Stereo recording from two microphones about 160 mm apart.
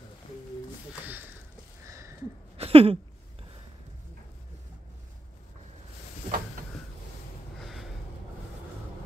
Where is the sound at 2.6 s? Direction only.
35° right (ahead or behind).